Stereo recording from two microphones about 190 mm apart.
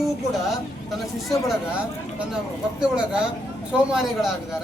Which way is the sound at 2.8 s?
5° right (ahead or behind).